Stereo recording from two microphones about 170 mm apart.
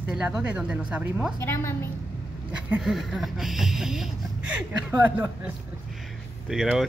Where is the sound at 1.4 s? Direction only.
15° left (ahead or behind).